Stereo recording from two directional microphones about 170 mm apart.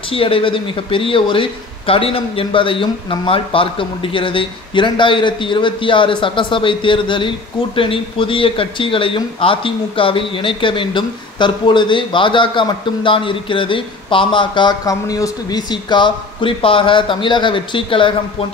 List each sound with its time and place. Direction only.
0.1 s speech: 30° left (ahead or behind)